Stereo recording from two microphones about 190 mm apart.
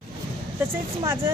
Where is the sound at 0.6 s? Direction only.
15° right (ahead or behind).